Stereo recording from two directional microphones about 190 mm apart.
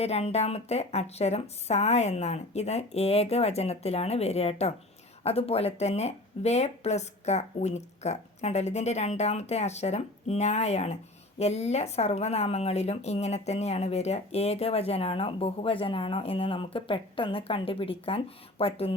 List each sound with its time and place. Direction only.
0.0 s speech: 35° left (ahead or behind)